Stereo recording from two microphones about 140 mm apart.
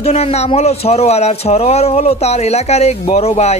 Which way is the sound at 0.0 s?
50° left (ahead or behind).